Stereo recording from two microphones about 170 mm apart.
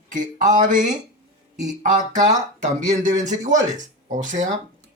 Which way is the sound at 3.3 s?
45° right (ahead or behind).